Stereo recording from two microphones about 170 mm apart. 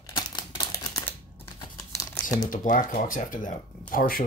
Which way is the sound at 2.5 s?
50° left (ahead or behind).